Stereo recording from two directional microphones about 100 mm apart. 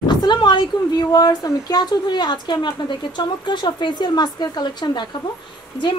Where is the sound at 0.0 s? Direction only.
50° left (ahead or behind).